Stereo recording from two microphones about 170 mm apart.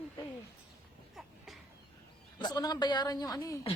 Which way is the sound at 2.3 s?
25° left (ahead or behind).